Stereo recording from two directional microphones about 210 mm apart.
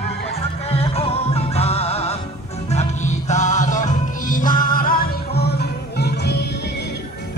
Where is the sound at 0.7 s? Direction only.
30° left (ahead or behind).